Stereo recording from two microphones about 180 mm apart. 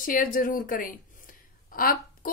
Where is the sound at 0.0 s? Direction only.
50° left (ahead or behind).